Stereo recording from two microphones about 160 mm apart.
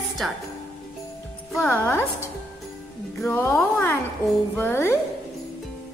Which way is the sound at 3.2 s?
10° left (ahead or behind).